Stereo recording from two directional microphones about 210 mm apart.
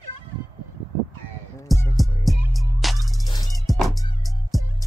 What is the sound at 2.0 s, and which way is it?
Music, centre (ahead or behind).